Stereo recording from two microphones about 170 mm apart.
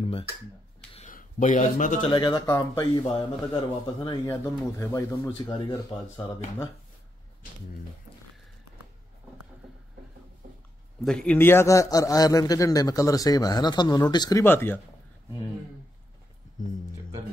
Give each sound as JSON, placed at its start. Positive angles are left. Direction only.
{"t": 0.9, "sound": "speech", "side_deg": 45}
{"t": 2.0, "sound": "a man's voice", "side_deg": 25}
{"t": 11.1, "sound": "a man's voice", "side_deg": 5}
{"t": 14.4, "sound": "speech", "side_deg": 10}